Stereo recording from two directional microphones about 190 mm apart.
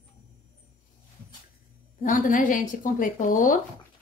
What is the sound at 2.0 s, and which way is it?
A woman's voice, 45° left (ahead or behind).